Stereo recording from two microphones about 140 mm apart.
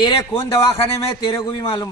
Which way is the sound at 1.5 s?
40° left (ahead or behind).